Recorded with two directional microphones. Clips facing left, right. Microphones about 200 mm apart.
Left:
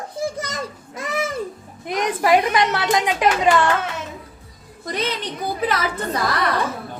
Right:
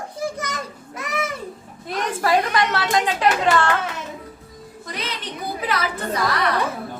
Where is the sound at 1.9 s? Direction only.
15° left (ahead or behind).